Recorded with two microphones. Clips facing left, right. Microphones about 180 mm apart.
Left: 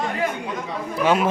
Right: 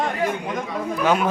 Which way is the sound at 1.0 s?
Centre (ahead or behind).